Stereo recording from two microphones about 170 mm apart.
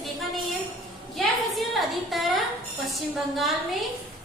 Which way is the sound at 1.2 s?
Centre (ahead or behind).